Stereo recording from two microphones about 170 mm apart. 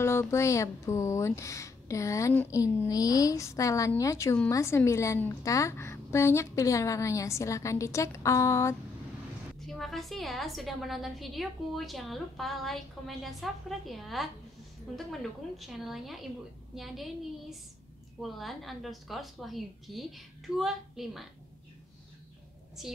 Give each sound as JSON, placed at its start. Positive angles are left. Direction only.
{"t": 0.0, "sound": "a woman's voice", "side_deg": 15}
{"t": 9.7, "sound": "a woman's voice", "side_deg": 0}
{"t": 22.8, "sound": "a woman's voice", "side_deg": 0}